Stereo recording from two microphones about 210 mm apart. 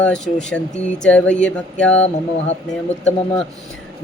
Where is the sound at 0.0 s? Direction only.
5° left (ahead or behind).